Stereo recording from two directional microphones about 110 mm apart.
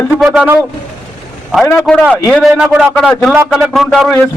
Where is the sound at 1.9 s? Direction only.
5° left (ahead or behind).